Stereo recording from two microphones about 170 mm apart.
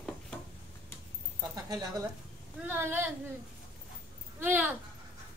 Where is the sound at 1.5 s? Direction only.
20° right (ahead or behind).